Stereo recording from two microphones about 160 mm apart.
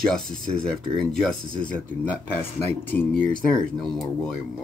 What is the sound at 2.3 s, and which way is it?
Speech, 10° left (ahead or behind).